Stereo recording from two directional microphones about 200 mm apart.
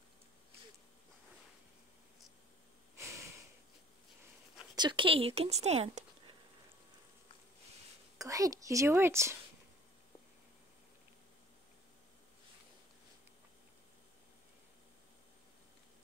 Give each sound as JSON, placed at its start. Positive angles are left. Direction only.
{"t": 3.0, "sound": "a sound", "side_deg": -15}
{"t": 4.7, "sound": "speech", "side_deg": -25}
{"t": 8.2, "sound": "a woman's voice", "side_deg": -15}